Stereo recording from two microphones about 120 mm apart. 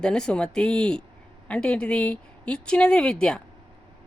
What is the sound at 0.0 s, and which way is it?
Speech, 5° left (ahead or behind).